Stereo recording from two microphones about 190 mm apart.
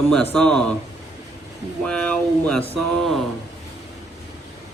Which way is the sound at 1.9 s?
5° left (ahead or behind).